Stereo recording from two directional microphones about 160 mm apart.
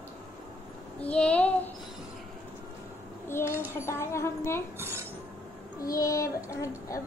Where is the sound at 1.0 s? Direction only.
5° left (ahead or behind).